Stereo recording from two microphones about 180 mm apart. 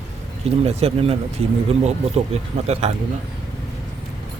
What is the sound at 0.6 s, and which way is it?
Speech, 35° right (ahead or behind).